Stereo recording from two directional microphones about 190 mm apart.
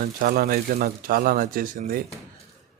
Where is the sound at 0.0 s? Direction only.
50° right (ahead or behind).